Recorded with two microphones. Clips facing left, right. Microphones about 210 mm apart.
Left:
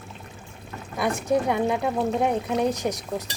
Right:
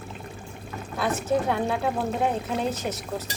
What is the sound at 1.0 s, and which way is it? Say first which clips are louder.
Speech: left 2 dB; 15° left (ahead or behind).